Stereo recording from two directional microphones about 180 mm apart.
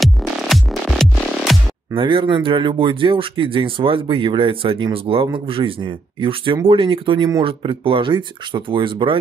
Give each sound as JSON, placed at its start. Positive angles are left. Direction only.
{"t": 0.0, "sound": "music", "side_deg": 0}
{"t": 2.0, "sound": "speech", "side_deg": -25}